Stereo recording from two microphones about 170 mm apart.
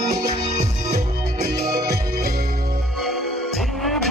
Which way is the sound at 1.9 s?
20° right (ahead or behind).